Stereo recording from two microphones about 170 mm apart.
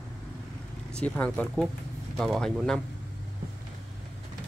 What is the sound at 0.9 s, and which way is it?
A man's voice, 5° left (ahead or behind).